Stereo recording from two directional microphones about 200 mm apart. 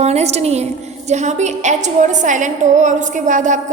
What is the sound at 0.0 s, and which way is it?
A woman's voice, 35° right (ahead or behind).